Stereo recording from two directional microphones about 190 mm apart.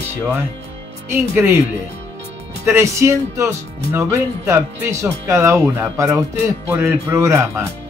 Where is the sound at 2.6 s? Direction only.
15° right (ahead or behind).